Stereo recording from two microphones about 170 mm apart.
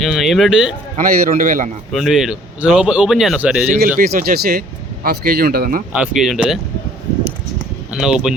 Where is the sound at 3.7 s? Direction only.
55° right (ahead or behind).